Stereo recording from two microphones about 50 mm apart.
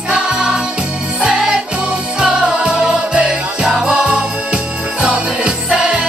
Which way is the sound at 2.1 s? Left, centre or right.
Right.